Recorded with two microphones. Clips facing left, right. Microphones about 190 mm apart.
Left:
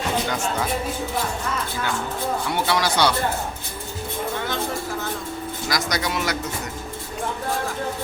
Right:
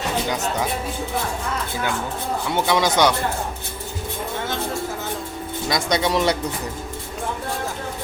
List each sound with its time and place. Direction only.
2.5 s speech: 20° right (ahead or behind)
5.6 s speech: 25° right (ahead or behind)